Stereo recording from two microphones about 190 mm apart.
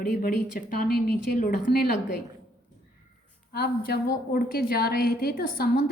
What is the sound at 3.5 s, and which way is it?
A woman's voice, 55° left (ahead or behind).